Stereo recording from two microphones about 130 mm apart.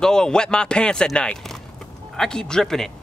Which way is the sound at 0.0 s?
5° left (ahead or behind).